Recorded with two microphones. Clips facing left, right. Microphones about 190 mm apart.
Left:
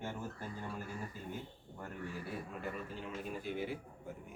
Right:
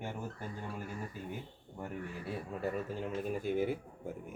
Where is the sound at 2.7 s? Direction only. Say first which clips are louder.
Right 6 dB; 45° right (ahead or behind).